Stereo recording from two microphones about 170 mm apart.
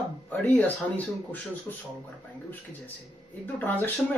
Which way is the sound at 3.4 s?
10° left (ahead or behind).